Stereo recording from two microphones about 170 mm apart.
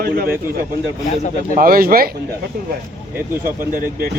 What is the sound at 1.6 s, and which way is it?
Speech, 60° right (ahead or behind).